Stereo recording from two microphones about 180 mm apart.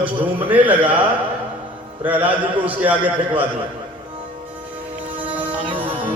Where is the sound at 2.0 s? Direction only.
10° right (ahead or behind).